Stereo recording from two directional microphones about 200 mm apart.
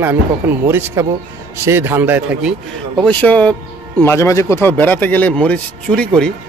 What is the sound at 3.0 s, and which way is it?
A man's voice, 5° left (ahead or behind).